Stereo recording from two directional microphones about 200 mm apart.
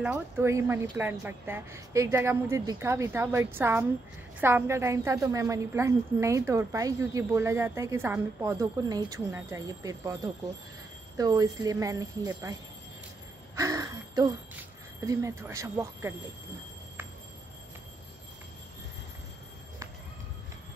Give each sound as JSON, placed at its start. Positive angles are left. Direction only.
{"t": 0.0, "sound": "a woman's voice", "side_deg": -10}
{"t": 13.6, "sound": "a sound", "side_deg": -15}
{"t": 15.0, "sound": "a woman's voice", "side_deg": -15}